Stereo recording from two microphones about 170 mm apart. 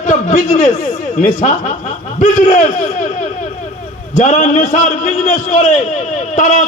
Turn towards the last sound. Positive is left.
turn(degrees=45)  # may be behind; listen again after turning